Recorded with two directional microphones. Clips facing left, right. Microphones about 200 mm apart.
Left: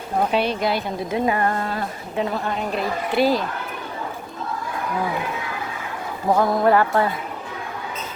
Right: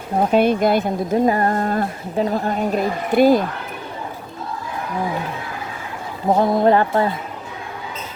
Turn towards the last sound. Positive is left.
turn(degrees=-25)  # may be behind; listen again after turning